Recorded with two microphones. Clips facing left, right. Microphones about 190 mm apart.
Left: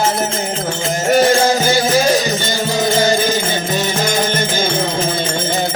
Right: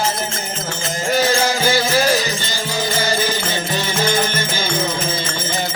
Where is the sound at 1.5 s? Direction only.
20° left (ahead or behind).